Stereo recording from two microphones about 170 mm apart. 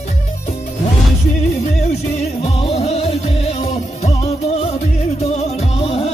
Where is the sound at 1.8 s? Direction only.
40° left (ahead or behind).